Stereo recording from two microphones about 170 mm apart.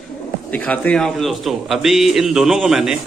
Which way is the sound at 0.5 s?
10° left (ahead or behind).